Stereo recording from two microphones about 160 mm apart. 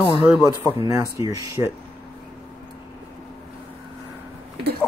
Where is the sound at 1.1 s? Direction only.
20° right (ahead or behind).